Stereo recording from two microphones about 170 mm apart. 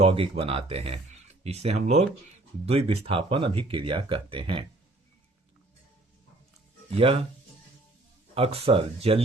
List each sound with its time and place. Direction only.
0.0 s speech: 35° right (ahead or behind)
6.9 s speech: 35° right (ahead or behind)
8.4 s speech: 35° right (ahead or behind)